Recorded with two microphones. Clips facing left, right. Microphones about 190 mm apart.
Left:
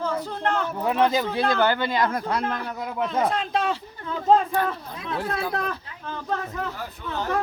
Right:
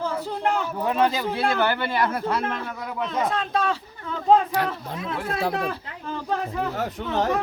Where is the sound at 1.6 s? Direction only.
15° left (ahead or behind).